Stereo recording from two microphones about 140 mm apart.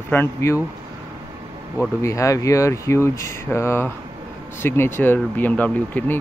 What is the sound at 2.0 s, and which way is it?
Speech, 20° left (ahead or behind).